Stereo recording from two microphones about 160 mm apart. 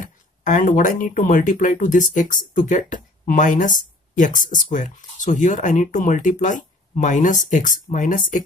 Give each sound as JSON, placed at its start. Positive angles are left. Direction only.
{"t": 0.0, "sound": "speech", "side_deg": 55}